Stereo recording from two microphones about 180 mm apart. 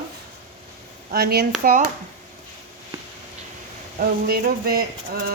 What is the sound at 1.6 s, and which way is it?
Speech, 50° right (ahead or behind).